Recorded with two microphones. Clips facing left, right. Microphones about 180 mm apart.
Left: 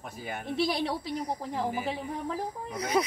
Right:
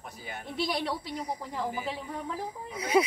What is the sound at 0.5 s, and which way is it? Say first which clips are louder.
Speech: left 2 dB; 25° left (ahead or behind).